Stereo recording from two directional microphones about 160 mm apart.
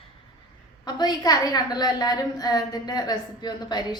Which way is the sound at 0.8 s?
25° left (ahead or behind).